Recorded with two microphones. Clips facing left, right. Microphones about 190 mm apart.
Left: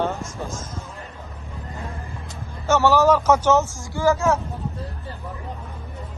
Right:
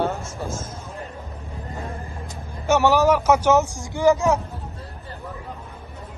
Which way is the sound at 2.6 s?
15° right (ahead or behind).